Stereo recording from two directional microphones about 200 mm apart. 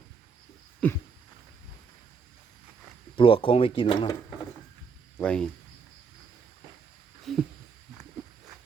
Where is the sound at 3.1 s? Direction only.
25° left (ahead or behind).